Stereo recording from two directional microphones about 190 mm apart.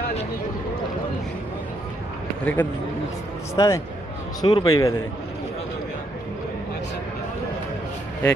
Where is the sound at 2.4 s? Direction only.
10° left (ahead or behind).